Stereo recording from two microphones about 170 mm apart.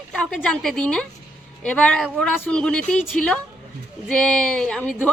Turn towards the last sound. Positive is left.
turn(degrees=5)  # may be behind; listen again after turning